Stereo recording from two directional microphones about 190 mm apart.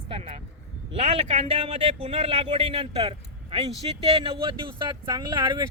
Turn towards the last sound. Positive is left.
turn(degrees=-20)  # may be behind; listen again after turning